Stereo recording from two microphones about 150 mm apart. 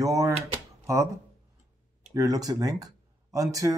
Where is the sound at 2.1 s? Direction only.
25° right (ahead or behind).